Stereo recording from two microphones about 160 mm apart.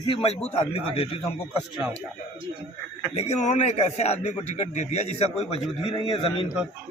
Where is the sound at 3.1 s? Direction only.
40° left (ahead or behind).